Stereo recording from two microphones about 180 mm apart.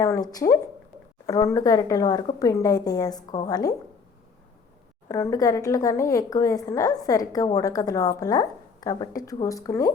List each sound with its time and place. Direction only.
0.0 s a woman's voice: 20° left (ahead or behind)
5.0 s a woman's voice: 15° left (ahead or behind)